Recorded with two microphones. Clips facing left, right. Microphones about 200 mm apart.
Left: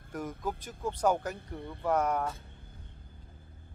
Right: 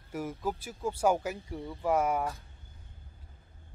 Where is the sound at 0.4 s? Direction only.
10° right (ahead or behind).